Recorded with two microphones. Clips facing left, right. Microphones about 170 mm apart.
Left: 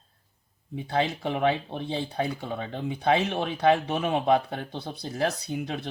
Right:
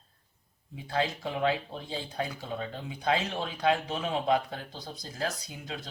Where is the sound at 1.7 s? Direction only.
65° left (ahead or behind).